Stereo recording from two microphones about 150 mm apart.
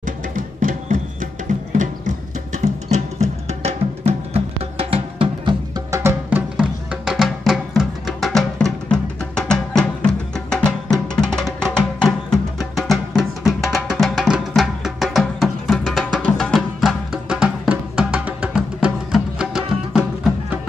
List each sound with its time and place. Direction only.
0.0 s music: 65° right (ahead or behind); by 5.6 s 35° right (ahead or behind)
5.9 s music: 20° right (ahead or behind)
6.5 s music: 5° right (ahead or behind)